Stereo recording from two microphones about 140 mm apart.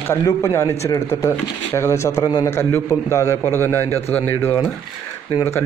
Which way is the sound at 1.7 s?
20° left (ahead or behind).